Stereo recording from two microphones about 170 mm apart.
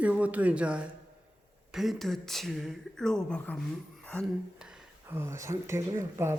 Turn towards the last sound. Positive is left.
turn(degrees=-15)  # may be behind; listen again after turning